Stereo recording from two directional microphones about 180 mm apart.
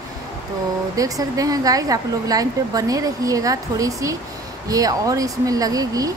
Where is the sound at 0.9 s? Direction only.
20° right (ahead or behind).